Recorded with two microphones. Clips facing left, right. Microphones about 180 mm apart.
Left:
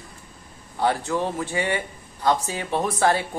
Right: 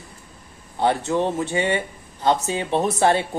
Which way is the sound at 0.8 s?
25° right (ahead or behind).